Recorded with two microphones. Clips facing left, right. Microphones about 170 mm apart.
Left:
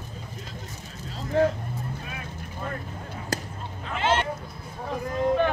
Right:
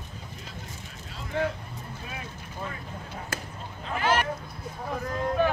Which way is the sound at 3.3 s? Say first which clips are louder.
Left 6 dB; 35° left (ahead or behind).